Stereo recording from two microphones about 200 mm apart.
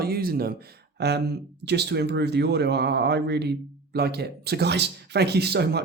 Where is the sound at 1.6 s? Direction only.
55° right (ahead or behind).